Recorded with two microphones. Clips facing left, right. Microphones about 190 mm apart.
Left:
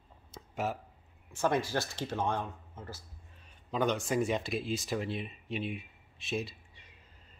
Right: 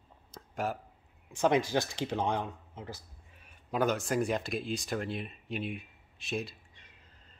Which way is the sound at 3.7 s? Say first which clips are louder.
Right 1 dB; 5° right (ahead or behind).